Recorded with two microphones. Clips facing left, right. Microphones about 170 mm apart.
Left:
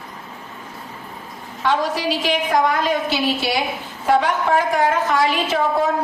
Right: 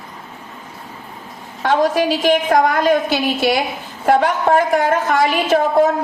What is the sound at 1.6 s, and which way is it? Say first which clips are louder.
Speech: right 3 dB; 50° right (ahead or behind).